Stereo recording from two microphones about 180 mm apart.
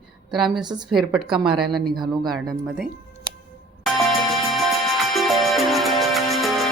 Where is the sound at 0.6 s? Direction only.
25° right (ahead or behind).